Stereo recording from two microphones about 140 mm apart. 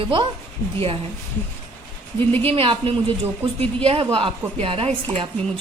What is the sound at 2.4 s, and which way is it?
A woman's voice, 40° right (ahead or behind).